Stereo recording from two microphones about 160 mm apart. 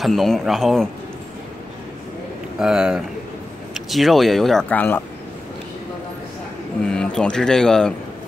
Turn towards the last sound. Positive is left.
turn(degrees=5)  # may be behind; listen again after turning